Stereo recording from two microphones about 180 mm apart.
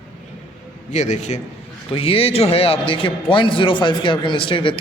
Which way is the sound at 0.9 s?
40° left (ahead or behind).